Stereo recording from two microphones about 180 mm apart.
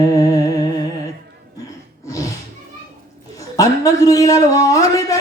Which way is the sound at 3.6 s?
20° left (ahead or behind).